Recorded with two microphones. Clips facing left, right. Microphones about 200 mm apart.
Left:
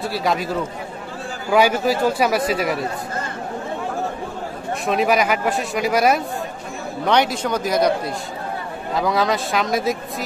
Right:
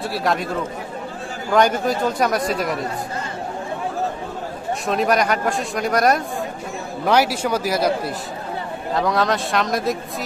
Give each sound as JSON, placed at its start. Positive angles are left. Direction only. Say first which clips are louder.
{"t": 0.0, "sound": "speech", "louder": "even", "side_deg": 0}
{"t": 1.5, "sound": "speech", "louder": "left 1 dB", "side_deg": 5}
{"t": 4.8, "sound": "speech", "louder": "left 1 dB", "side_deg": 5}